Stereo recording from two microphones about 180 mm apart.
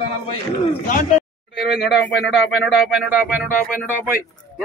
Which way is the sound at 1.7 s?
Centre (ahead or behind).